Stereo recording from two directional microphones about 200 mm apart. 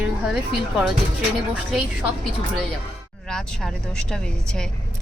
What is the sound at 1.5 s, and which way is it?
Speech, 5° right (ahead or behind).